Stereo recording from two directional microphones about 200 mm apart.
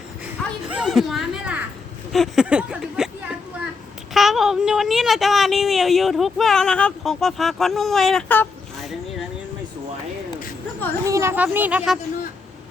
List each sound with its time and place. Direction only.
0.7 s speech: 5° right (ahead or behind)
2.1 s a sound: centre (ahead or behind)
4.1 s a woman's voice: centre (ahead or behind)
11.0 s speech: 15° right (ahead or behind)